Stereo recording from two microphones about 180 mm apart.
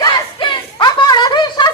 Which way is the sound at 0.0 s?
25° left (ahead or behind).